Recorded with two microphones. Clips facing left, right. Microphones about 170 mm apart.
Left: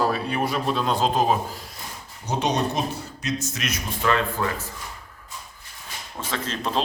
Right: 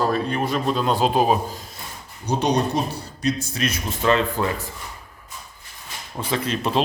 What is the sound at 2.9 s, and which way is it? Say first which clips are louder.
Speech: right 4 dB; 35° right (ahead or behind).